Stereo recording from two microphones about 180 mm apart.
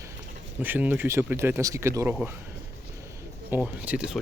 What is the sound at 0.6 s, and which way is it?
Speech, 10° right (ahead or behind).